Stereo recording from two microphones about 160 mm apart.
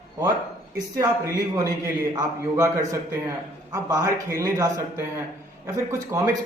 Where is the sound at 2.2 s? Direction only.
20° right (ahead or behind).